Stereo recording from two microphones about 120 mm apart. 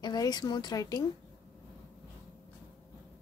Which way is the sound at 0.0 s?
35° left (ahead or behind).